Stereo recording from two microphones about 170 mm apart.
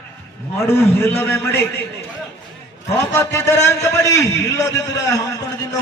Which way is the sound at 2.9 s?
15° left (ahead or behind).